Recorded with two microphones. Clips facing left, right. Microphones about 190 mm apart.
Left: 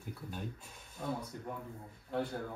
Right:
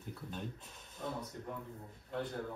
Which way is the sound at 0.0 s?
5° left (ahead or behind).